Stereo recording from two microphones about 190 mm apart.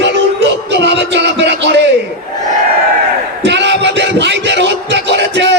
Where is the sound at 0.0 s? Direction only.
65° right (ahead or behind).